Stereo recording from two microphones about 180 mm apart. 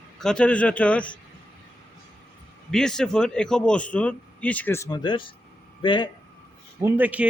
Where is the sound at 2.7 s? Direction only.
5° left (ahead or behind); by 6.1 s 25° left (ahead or behind).